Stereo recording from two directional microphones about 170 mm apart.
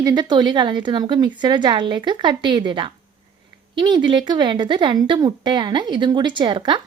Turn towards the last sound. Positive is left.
turn(degrees=-25)  # may be behind; listen again after turning